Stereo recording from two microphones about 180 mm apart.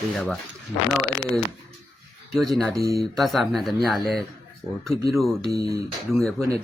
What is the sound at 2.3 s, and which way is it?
Speech, centre (ahead or behind).